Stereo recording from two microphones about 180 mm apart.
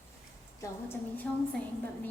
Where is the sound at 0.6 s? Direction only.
10° left (ahead or behind).